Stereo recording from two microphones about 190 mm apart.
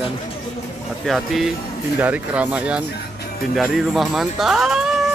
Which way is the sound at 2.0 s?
10° right (ahead or behind).